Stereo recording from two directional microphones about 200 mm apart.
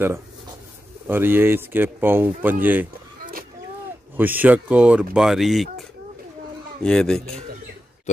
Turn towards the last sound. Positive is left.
turn(degrees=5)  # may be behind; listen again after turning